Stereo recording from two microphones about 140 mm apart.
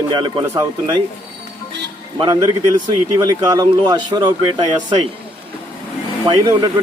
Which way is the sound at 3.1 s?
25° right (ahead or behind).